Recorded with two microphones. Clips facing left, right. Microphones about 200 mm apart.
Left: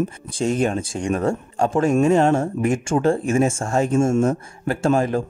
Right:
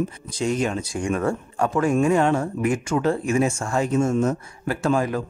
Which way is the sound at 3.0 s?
45° left (ahead or behind).